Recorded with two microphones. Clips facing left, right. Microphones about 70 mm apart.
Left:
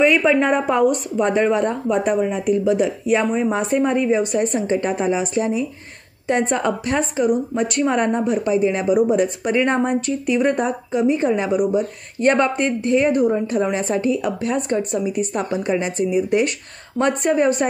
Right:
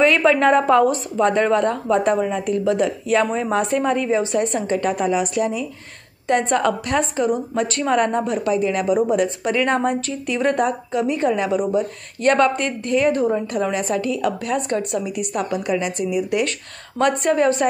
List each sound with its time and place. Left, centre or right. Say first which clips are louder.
0.0 s a woman's voice: even; centre
13.5 s a woman's voice: left 1 dB; left
17.0 s speech: even; centre